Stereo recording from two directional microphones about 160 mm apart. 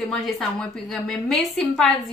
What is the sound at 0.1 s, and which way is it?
A woman's voice, centre (ahead or behind).